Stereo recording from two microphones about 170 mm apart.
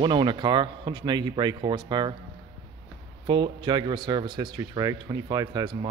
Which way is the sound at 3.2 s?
25° right (ahead or behind).